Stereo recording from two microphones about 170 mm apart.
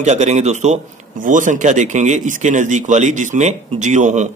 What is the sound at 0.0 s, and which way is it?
Speech, 40° right (ahead or behind).